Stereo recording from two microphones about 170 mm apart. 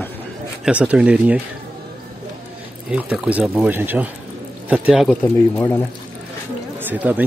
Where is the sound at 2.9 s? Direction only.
10° right (ahead or behind).